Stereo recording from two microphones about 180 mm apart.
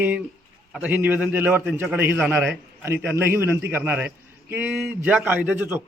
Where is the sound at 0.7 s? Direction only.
10° right (ahead or behind).